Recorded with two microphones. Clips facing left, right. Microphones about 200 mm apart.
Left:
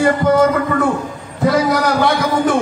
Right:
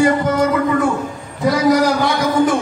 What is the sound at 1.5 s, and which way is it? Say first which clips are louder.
A man's voice: right 2 dB; 60° left (ahead or behind).